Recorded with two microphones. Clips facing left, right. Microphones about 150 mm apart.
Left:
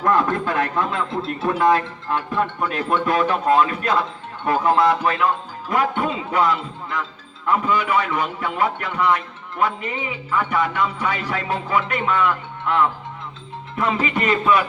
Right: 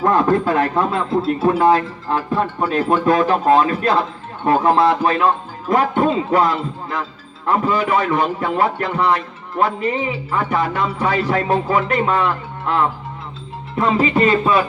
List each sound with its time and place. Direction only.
0.0 s speech: 35° right (ahead or behind)